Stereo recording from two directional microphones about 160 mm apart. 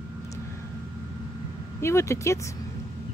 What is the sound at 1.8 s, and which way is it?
Speech, 15° left (ahead or behind).